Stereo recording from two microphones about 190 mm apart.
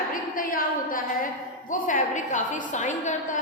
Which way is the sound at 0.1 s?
45° left (ahead or behind).